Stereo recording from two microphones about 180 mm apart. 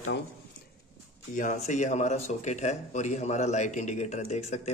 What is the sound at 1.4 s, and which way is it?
Speech, 45° left (ahead or behind).